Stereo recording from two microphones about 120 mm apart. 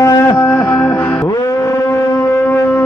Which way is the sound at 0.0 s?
30° left (ahead or behind).